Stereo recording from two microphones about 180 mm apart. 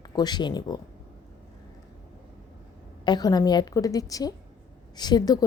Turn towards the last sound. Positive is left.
turn(degrees=20)  # may be behind; listen again after turning